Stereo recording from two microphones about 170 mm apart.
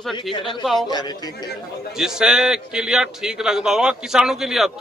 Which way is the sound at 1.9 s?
5° right (ahead or behind).